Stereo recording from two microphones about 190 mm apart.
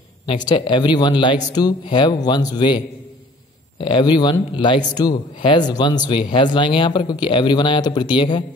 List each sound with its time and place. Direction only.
0.3 s speech: 25° left (ahead or behind)